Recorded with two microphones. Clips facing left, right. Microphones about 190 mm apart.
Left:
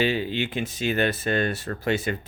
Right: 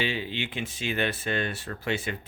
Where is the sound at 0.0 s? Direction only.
45° left (ahead or behind).